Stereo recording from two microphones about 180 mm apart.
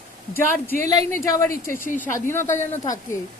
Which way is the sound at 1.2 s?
15° left (ahead or behind).